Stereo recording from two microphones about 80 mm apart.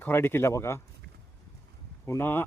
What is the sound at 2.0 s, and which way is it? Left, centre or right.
Speech, left.